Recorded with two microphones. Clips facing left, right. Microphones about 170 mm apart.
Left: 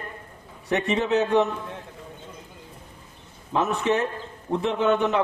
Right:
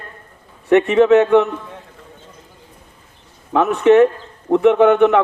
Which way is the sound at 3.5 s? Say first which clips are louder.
Right 11 dB; 70° right (ahead or behind).